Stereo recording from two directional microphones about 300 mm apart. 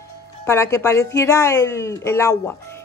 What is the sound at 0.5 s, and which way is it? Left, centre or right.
A woman's voice, centre.